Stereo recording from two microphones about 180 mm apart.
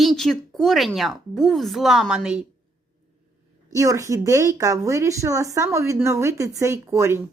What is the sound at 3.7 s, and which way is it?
A woman's voice, 20° right (ahead or behind).